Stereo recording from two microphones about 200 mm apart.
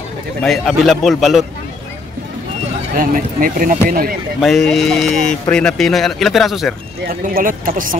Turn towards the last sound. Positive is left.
turn(degrees=-45)  # may be behind; listen again after turning